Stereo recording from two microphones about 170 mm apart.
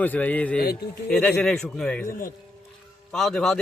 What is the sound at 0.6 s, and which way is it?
Speech, 70° left (ahead or behind).